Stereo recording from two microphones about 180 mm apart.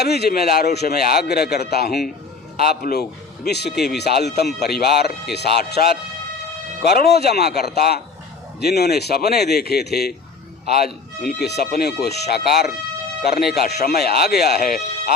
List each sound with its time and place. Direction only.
0.0 s a man's voice: 65° left (ahead or behind)
7.1 s a man's voice: 65° left (ahead or behind)